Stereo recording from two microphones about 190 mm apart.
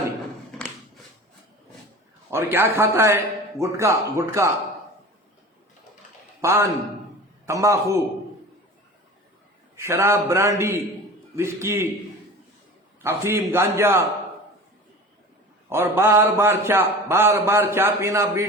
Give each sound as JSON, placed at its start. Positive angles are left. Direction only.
{"t": 2.3, "sound": "speech", "side_deg": -10}
{"t": 6.4, "sound": "a man's voice", "side_deg": -15}
{"t": 9.7, "sound": "speech", "side_deg": -15}
{"t": 13.0, "sound": "speech", "side_deg": -15}
{"t": 15.7, "sound": "speech", "side_deg": -10}